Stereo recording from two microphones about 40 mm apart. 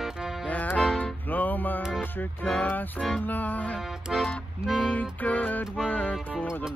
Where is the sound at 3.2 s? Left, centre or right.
Left.